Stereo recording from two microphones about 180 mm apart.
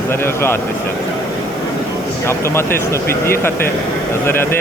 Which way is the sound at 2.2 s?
15° left (ahead or behind).